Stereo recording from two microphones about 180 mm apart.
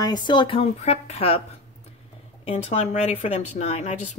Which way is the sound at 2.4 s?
35° left (ahead or behind).